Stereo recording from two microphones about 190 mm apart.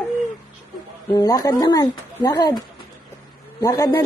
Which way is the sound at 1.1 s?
20° left (ahead or behind).